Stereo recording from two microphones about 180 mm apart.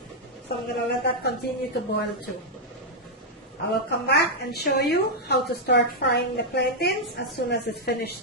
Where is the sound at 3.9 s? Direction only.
65° left (ahead or behind).